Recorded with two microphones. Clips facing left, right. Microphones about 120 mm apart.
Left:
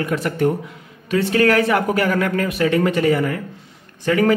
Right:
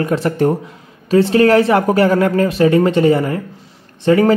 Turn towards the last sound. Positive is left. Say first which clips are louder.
# right 6 dB
turn(degrees=-30)  # may be behind; listen again after turning